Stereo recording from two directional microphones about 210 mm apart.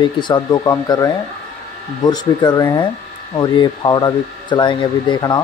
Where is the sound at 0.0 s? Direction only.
20° left (ahead or behind).